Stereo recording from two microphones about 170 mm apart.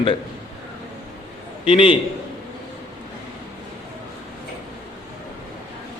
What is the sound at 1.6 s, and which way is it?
Speech, 30° left (ahead or behind).